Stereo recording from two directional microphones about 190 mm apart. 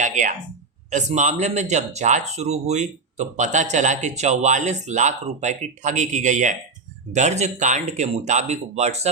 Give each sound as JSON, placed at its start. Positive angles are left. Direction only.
{"t": 0.0, "sound": "speech", "side_deg": -40}